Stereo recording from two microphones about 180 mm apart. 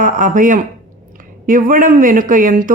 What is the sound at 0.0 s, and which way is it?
Speech, 45° right (ahead or behind).